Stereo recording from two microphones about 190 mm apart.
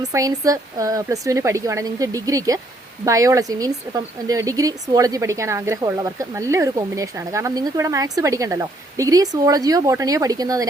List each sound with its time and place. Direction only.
0.0 s speech: 20° right (ahead or behind)